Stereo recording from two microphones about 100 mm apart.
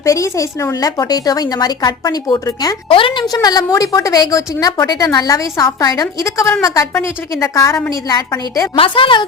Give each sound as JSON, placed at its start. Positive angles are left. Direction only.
{"t": 0.0, "sound": "a woman's voice", "side_deg": 35}
{"t": 2.9, "sound": "a woman's voice", "side_deg": 60}
{"t": 3.3, "sound": "a woman's voice", "side_deg": 40}
{"t": 8.7, "sound": "a woman's voice", "side_deg": 60}